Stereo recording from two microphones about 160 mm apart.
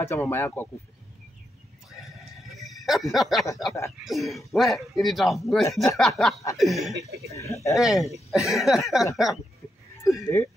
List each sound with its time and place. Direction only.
0.0 s speech: 15° left (ahead or behind)
2.4 s a sound: centre (ahead or behind)
4.0 s speech: centre (ahead or behind)
7.2 s speech: 20° left (ahead or behind)
7.7 s speech: centre (ahead or behind)
10.2 s speech: 20° left (ahead or behind)